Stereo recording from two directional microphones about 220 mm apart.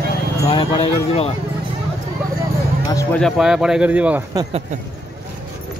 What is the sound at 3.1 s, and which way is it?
Speech, centre (ahead or behind).